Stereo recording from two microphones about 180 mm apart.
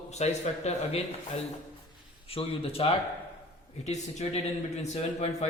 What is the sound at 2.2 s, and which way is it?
Speech, 30° left (ahead or behind).